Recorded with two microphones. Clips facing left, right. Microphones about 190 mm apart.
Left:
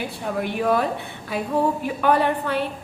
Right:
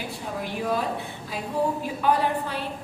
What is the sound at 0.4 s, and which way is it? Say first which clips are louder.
A woman's voice: left 5 dB; 65° left (ahead or behind).